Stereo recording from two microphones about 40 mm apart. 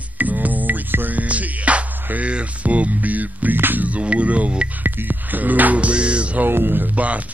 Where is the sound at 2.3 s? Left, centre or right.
Right.